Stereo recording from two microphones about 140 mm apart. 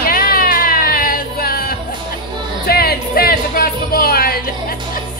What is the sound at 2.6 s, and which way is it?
Music, 90° left.